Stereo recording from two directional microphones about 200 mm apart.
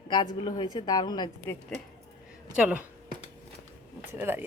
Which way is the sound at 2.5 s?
5° right (ahead or behind).